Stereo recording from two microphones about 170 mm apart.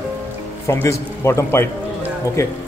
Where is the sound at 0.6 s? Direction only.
15° left (ahead or behind).